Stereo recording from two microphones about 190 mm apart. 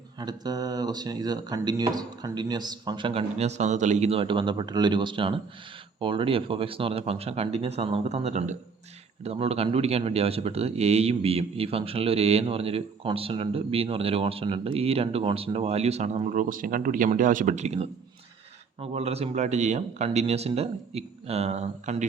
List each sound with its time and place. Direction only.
0.2 s a man's voice: 20° right (ahead or behind); by 22.0 s 35° right (ahead or behind)